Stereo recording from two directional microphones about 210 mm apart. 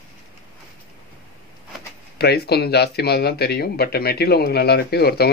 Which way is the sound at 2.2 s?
50° left (ahead or behind).